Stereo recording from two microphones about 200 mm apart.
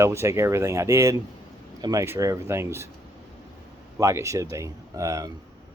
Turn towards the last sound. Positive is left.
turn(degrees=-15)  # may be behind; listen again after turning